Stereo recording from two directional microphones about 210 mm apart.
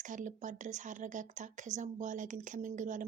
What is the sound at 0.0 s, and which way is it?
Speech, 35° right (ahead or behind).